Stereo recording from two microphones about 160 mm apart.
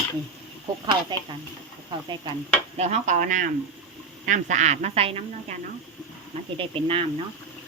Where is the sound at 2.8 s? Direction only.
45° right (ahead or behind).